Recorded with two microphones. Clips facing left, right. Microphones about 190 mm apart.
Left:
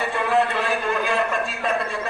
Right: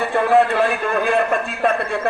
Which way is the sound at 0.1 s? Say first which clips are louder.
Right 7 dB; 55° right (ahead or behind).